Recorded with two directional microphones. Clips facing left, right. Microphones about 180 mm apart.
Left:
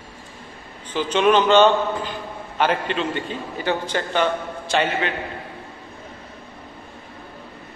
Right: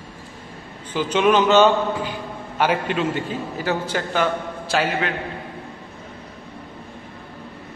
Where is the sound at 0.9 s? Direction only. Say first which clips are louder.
Even; 10° right (ahead or behind).